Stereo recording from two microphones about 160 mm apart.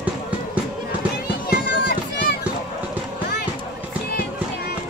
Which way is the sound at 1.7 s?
90° left.